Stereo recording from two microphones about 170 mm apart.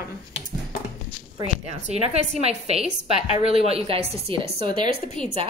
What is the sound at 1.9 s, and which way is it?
A woman's voice, 40° right (ahead or behind).